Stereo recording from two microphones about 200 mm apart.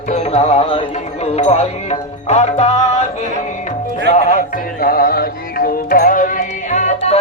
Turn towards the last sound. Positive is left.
turn(degrees=35)  # may be behind; listen again after turning